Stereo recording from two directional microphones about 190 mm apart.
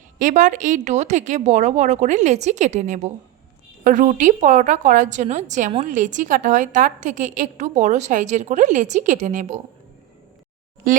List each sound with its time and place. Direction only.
0.2 s a woman's voice: 45° right (ahead or behind)